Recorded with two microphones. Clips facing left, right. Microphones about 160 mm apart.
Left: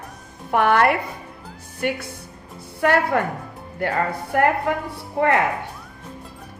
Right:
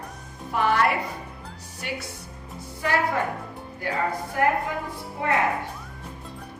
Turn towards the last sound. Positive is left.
turn(degrees=65)  # may be behind; listen again after turning